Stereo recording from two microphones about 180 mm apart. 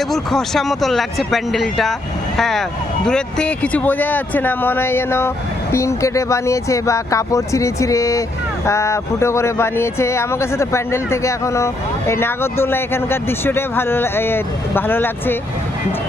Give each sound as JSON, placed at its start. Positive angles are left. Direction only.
{"t": 0.1, "sound": "speech", "side_deg": 0}